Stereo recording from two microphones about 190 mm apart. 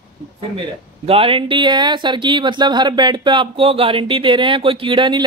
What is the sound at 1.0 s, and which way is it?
Speech, 30° right (ahead or behind).